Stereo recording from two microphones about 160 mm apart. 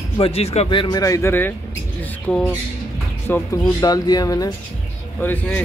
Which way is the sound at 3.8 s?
25° left (ahead or behind).